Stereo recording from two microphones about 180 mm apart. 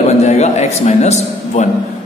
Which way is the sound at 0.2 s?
40° left (ahead or behind).